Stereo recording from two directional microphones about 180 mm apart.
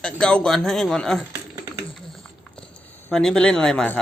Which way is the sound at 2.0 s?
Centre (ahead or behind).